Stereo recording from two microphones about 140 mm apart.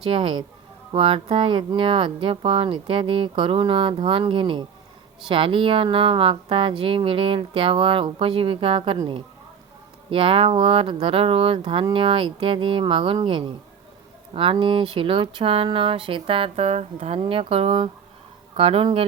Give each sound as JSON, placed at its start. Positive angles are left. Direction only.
{"t": 0.1, "sound": "speech", "side_deg": -40}